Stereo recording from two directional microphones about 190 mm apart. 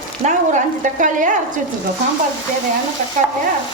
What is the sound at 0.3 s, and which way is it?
A woman's voice, 40° right (ahead or behind).